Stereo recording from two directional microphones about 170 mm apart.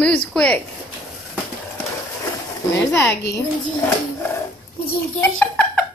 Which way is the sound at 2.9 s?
15° left (ahead or behind).